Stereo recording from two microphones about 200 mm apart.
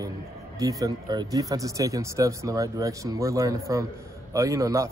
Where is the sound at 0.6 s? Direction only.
15° right (ahead or behind).